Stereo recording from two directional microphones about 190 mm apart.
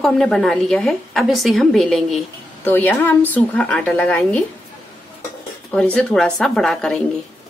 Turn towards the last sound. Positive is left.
turn(degrees=5)  # may be behind; listen again after turning